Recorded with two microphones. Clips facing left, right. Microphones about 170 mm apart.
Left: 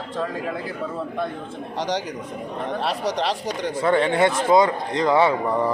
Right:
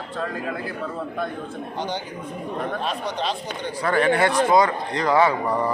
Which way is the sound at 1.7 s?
80° left.